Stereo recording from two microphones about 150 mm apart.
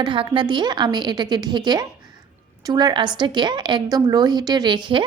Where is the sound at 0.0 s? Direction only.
30° right (ahead or behind).